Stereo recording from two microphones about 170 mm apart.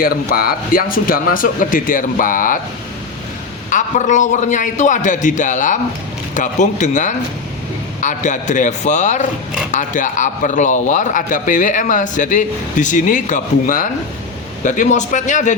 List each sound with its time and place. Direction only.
0.0 s a man's voice: 60° left (ahead or behind)
3.7 s a man's voice: 45° left (ahead or behind)